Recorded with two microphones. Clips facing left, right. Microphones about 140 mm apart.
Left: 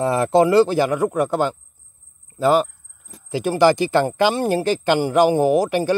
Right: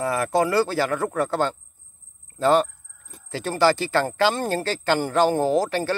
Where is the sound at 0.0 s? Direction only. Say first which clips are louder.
Left 6 dB; 25° left (ahead or behind).